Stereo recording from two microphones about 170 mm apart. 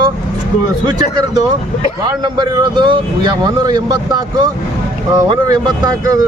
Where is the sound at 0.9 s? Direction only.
25° right (ahead or behind).